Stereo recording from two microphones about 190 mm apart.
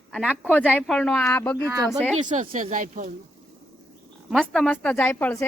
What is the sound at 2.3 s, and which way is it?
Speech, 45° right (ahead or behind).